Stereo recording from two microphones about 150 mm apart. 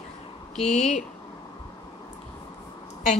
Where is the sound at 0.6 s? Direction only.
Centre (ahead or behind).